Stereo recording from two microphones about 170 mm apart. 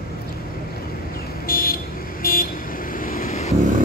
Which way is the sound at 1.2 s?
60° left (ahead or behind).